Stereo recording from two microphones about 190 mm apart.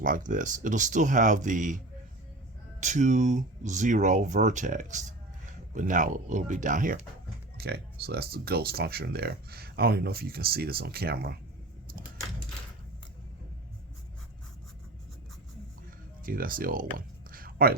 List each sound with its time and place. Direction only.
0.0 s speech: 45° right (ahead or behind)
2.8 s speech: 40° right (ahead or behind)
7.6 s speech: 55° right (ahead or behind)
16.2 s speech: 50° right (ahead or behind)
17.3 s a sound: 50° right (ahead or behind)